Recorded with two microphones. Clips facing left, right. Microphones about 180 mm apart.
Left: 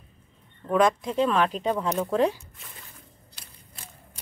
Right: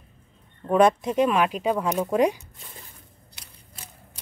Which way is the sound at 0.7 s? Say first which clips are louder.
Right 3 dB; 20° right (ahead or behind).